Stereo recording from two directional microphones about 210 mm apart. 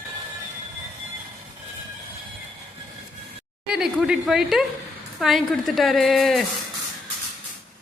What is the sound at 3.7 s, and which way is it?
A woman's voice, 5° right (ahead or behind).